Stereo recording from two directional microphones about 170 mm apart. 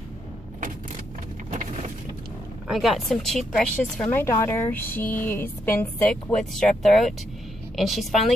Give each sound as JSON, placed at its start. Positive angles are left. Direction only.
{"t": 1.5, "sound": "vehicle", "side_deg": -45}
{"t": 2.7, "sound": "a woman's voice", "side_deg": 0}
{"t": 6.3, "sound": "speech", "side_deg": 5}